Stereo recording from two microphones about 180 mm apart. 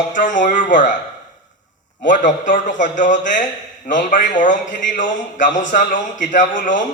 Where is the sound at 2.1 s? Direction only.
45° left (ahead or behind).